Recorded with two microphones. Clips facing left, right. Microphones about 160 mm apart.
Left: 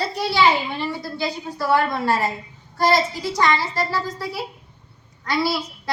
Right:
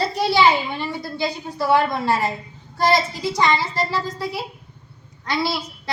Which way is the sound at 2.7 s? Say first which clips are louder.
Even; 20° right (ahead or behind).